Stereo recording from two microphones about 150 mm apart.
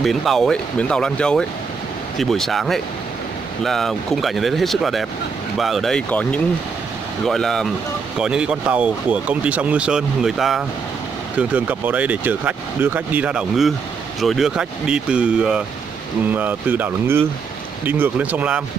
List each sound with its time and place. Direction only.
0.0 s speech: centre (ahead or behind)